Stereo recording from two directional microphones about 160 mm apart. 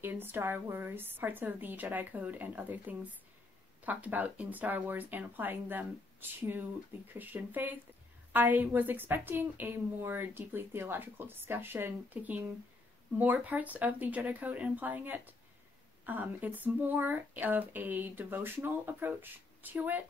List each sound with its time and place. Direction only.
0.0 s a woman's voice: 15° right (ahead or behind)